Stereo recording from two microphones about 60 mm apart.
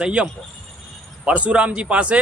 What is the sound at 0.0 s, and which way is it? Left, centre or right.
A man's voice, centre.